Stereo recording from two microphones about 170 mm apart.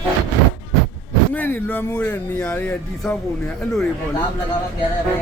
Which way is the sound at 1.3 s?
10° left (ahead or behind).